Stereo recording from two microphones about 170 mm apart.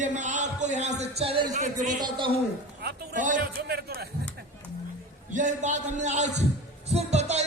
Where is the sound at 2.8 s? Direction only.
50° right (ahead or behind).